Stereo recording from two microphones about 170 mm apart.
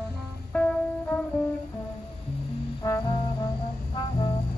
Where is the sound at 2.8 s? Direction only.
20° left (ahead or behind).